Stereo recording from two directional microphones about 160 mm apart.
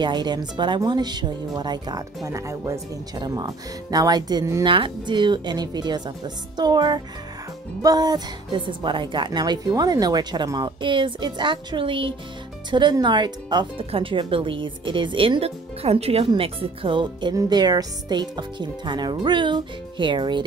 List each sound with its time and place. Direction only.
0.0 s a woman's voice: 30° right (ahead or behind)